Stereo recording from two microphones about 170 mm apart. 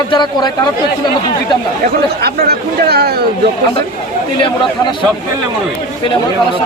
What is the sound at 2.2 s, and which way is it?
Speech, 65° right (ahead or behind).